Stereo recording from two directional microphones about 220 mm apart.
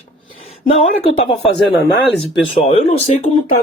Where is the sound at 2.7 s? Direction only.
30° left (ahead or behind).